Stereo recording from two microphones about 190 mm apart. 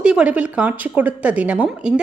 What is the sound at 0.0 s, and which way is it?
A woman's voice, 5° right (ahead or behind).